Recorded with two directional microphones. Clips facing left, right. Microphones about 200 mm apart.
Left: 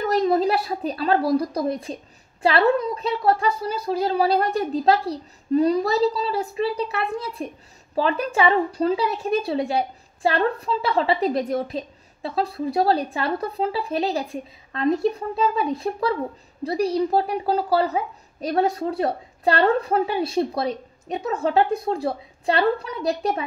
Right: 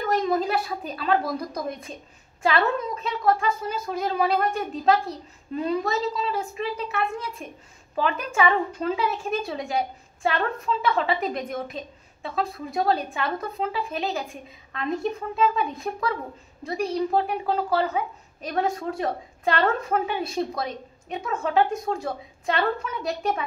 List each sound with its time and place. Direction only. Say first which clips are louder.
0.0 s a woman's voice: left 4 dB; 35° left (ahead or behind)